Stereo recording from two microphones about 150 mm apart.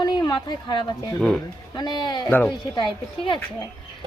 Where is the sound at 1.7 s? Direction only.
30° left (ahead or behind).